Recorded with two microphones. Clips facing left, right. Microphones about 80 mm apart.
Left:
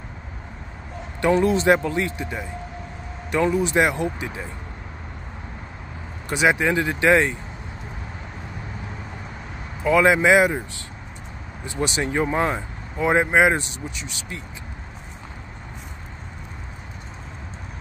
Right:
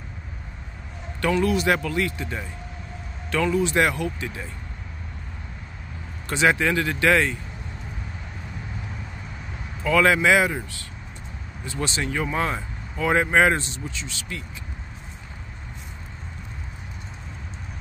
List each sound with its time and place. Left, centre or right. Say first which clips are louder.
1.4 s speech: left 3 dB; left
6.2 s speech: left 1 dB; centre
9.8 s speech: left 2 dB; left
11.6 s speech: left 3 dB; left